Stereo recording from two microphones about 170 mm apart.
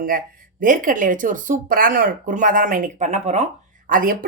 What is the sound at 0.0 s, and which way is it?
Speech, 55° right (ahead or behind).